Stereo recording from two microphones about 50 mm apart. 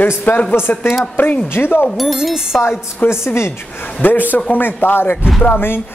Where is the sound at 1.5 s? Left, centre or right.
Left.